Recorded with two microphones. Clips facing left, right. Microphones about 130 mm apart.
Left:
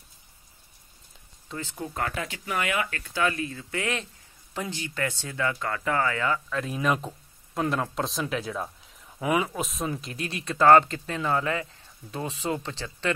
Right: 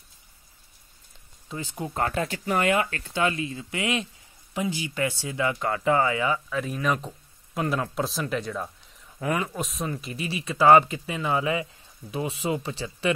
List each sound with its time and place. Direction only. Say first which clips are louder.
1.5 s speech: right 2 dB; 15° right (ahead or behind)
2.0 s speech: right 5 dB; 35° right (ahead or behind); by 6.6 s 10° right (ahead or behind)
6.6 s a man's voice: even; centre (ahead or behind)